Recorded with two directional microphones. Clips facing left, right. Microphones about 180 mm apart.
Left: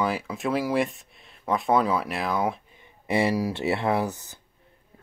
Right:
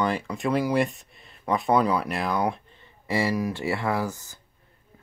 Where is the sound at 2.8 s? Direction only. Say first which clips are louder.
Left 2 dB; 20° left (ahead or behind).